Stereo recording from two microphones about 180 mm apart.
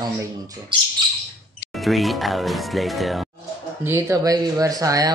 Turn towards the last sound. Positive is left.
turn(degrees=-20)  # may be behind; listen again after turning